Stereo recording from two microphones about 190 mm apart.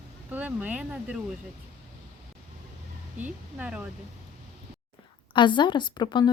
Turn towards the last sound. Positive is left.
turn(degrees=25)  # may be behind; listen again after turning